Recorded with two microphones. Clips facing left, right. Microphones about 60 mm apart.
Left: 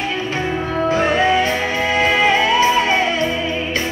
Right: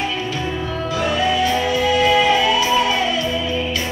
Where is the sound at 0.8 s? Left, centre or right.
Left.